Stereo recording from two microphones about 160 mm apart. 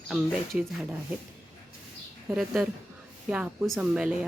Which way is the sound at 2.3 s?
5° right (ahead or behind).